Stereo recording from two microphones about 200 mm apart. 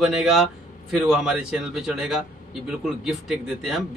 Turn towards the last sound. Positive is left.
turn(degrees=-5)  # may be behind; listen again after turning